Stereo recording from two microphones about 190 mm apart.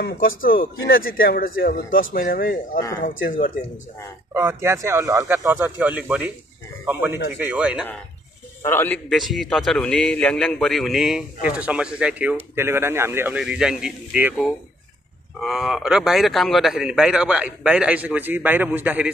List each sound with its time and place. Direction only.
0.0 s speech: 50° left (ahead or behind)
4.3 s speech: 15° right (ahead or behind)
8.6 s a man's voice: 10° left (ahead or behind); by 14.3 s 5° right (ahead or behind)
15.4 s a man's voice: centre (ahead or behind)